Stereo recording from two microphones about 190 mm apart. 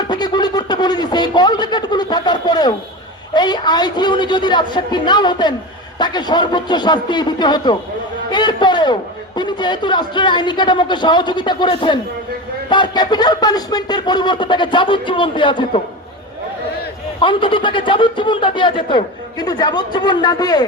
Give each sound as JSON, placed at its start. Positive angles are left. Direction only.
{"t": 0.1, "sound": "a man's voice", "side_deg": 20}
{"t": 17.2, "sound": "a man's voice", "side_deg": 25}